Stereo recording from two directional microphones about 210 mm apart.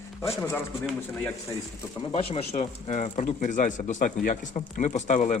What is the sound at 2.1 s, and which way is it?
Speech, 30° left (ahead or behind).